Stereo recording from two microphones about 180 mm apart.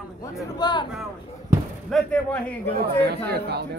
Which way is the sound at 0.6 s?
25° left (ahead or behind).